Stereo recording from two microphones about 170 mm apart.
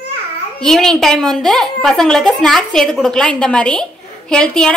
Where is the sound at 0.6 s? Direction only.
5° left (ahead or behind).